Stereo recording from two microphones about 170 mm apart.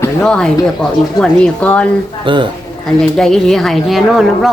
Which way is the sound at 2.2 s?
30° right (ahead or behind).